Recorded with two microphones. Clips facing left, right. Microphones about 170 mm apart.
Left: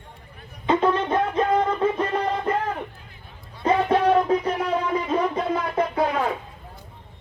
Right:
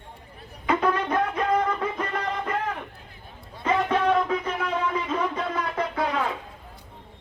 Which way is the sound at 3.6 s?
35° left (ahead or behind).